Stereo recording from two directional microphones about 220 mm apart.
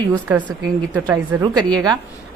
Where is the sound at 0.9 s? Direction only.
10° right (ahead or behind).